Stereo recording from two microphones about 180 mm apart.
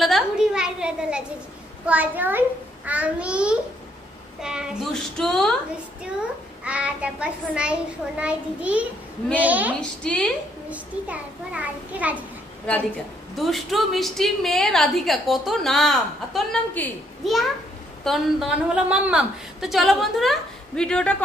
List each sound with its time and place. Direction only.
0.0 s a sound: centre (ahead or behind)
1.9 s a child's voice: 10° right (ahead or behind)
6.6 s a child's voice: 5° right (ahead or behind)
9.8 s a woman's voice: 5° left (ahead or behind)
10.7 s a child's voice: 10° right (ahead or behind)
13.4 s a woman's voice: centre (ahead or behind)